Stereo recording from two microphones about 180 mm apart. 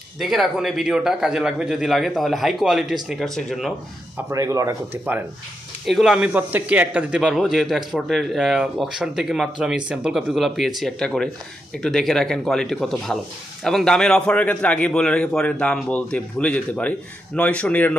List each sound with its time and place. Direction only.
0.2 s speech: centre (ahead or behind)
4.3 s speech: 20° right (ahead or behind)
5.9 s speech: centre (ahead or behind)